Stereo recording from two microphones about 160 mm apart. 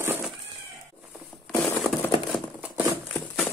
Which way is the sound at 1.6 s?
Centre (ahead or behind).